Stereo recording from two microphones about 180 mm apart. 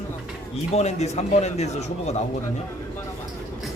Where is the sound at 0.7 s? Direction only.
40° left (ahead or behind).